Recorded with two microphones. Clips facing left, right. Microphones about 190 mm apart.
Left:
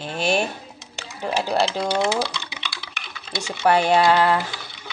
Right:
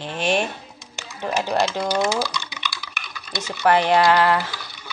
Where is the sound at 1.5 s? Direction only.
10° left (ahead or behind).